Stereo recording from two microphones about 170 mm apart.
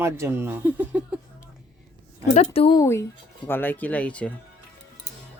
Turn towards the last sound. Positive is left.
turn(degrees=5)  # may be behind; listen again after turning